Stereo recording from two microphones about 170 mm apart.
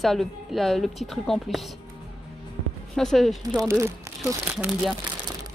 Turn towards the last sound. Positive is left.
turn(degrees=-5)  # may be behind; listen again after turning